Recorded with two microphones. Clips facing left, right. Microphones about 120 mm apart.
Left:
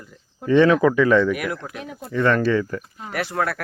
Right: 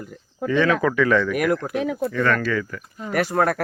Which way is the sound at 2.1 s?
25° left (ahead or behind).